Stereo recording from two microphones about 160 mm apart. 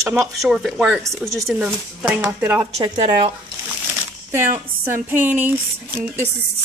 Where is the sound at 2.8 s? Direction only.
30° right (ahead or behind).